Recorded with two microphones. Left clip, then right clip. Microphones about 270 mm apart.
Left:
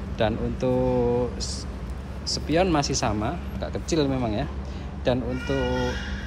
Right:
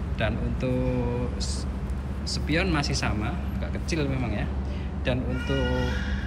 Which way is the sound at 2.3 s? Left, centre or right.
Centre.